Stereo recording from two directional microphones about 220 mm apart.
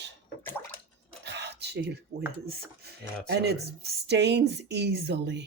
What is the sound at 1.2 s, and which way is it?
Speech, 50° right (ahead or behind).